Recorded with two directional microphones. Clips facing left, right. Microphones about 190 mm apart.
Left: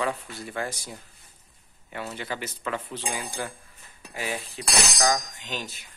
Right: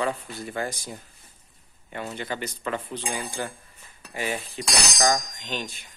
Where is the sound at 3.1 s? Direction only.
10° left (ahead or behind).